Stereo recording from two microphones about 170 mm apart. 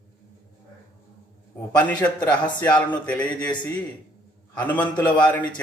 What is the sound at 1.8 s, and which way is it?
Speech, 5° left (ahead or behind).